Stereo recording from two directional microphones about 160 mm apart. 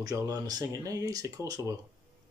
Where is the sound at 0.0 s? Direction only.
25° right (ahead or behind).